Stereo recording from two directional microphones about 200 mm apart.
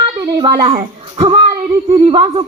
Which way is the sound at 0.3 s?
20° right (ahead or behind).